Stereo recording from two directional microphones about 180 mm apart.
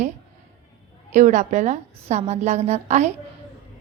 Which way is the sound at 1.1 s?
45° right (ahead or behind).